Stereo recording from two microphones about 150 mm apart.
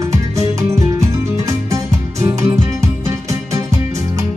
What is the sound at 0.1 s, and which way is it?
Music, 20° right (ahead or behind).